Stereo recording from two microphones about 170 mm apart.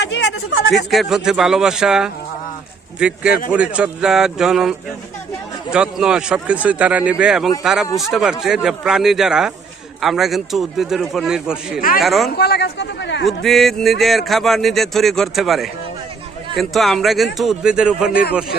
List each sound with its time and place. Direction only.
0.0 s a sound: 90° left
0.9 s speech: centre (ahead or behind)
3.2 s speech: 60° left (ahead or behind)
3.5 s speech: 5° right (ahead or behind)
5.7 s speech: 5° right (ahead or behind)
11.8 s speech: 55° left (ahead or behind)
12.0 s speech: centre (ahead or behind)
12.4 s speech: 70° left (ahead or behind); by 13.2 s 90° left
13.2 s speech: centre (ahead or behind)